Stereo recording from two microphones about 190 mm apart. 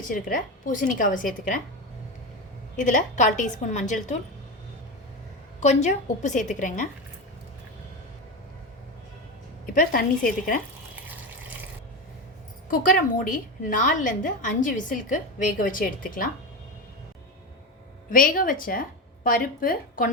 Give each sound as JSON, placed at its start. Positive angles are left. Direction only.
{"t": 0.1, "sound": "a woman's voice", "side_deg": 45}
{"t": 2.7, "sound": "a woman's voice", "side_deg": 40}
{"t": 5.5, "sound": "a woman's voice", "side_deg": 40}
{"t": 9.7, "sound": "a woman's voice", "side_deg": 50}
{"t": 12.7, "sound": "a woman's voice", "side_deg": 45}
{"t": 18.1, "sound": "a woman's voice", "side_deg": 45}